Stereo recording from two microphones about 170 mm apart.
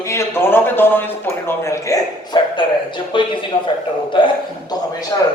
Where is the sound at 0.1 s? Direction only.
15° left (ahead or behind).